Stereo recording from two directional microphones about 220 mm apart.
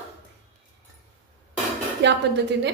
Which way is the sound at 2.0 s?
50° right (ahead or behind).